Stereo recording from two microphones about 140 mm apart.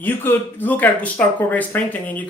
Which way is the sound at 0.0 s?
15° left (ahead or behind).